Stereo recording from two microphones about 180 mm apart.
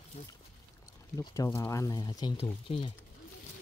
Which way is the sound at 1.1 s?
20° left (ahead or behind).